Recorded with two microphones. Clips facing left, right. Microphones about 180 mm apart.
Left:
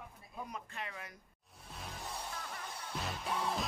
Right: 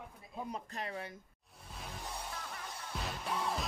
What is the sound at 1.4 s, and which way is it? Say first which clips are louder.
Music: left 1 dB; centre (ahead or behind).